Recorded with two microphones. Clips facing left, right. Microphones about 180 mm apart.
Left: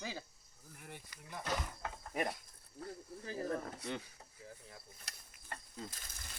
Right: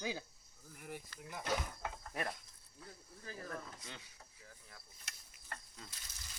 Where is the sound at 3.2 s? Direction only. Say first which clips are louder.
Left 8 dB; 30° left (ahead or behind).